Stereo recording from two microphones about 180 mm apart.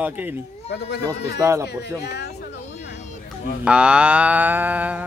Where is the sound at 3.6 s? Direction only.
5° right (ahead or behind).